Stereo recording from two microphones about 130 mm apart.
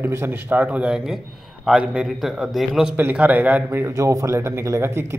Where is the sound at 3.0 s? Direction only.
10° right (ahead or behind).